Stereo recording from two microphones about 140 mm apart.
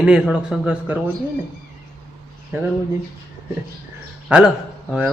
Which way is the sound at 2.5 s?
15° right (ahead or behind).